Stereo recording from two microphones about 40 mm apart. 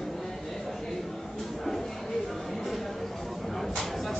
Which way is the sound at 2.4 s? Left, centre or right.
Centre.